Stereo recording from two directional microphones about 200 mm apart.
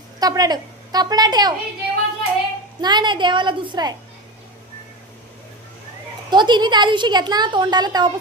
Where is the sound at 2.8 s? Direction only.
20° right (ahead or behind).